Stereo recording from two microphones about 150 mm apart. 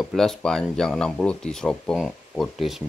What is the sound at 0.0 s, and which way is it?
Speech, centre (ahead or behind).